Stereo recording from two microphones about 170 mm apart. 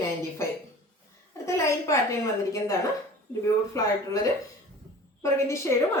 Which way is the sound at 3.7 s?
20° left (ahead or behind).